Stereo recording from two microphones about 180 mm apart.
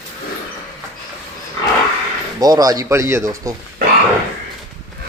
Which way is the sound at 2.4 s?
20° right (ahead or behind).